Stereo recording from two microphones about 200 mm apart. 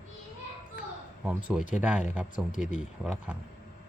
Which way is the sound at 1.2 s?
10° right (ahead or behind).